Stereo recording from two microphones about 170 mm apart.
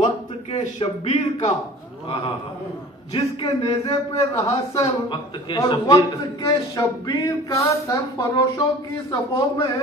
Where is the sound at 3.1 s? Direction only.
30° left (ahead or behind).